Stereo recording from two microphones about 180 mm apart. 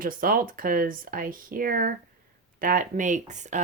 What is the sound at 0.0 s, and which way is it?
Speech, 50° right (ahead or behind).